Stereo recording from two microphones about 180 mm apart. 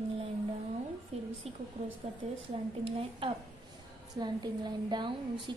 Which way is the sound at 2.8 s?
30° right (ahead or behind).